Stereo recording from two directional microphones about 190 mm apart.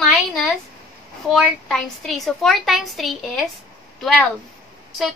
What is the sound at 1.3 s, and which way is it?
A woman's voice, centre (ahead or behind).